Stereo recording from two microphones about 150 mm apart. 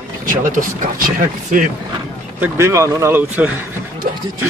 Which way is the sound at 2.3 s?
15° right (ahead or behind).